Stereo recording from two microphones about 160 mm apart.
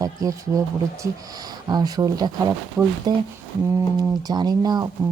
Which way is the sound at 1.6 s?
25° right (ahead or behind).